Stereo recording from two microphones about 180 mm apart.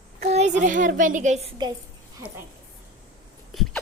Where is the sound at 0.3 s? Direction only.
40° right (ahead or behind).